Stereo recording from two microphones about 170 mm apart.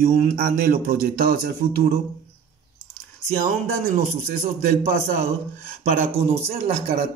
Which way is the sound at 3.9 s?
45° right (ahead or behind).